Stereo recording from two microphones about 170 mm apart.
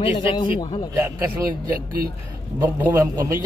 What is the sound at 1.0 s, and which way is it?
Speech, 15° right (ahead or behind).